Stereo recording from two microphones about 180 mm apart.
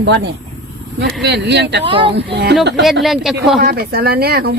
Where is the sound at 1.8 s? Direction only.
30° right (ahead or behind).